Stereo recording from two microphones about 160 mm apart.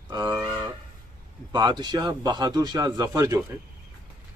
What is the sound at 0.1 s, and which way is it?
Cattle, 25° right (ahead or behind).